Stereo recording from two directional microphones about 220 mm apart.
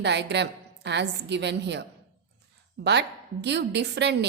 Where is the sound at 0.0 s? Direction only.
50° right (ahead or behind).